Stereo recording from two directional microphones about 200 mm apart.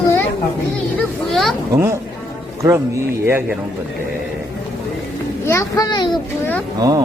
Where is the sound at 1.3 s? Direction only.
Centre (ahead or behind).